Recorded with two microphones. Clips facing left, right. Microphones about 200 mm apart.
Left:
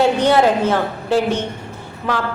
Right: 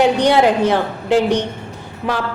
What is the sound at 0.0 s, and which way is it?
A woman's voice, 15° right (ahead or behind).